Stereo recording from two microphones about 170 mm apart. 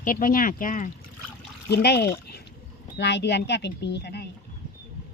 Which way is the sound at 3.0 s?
90° left.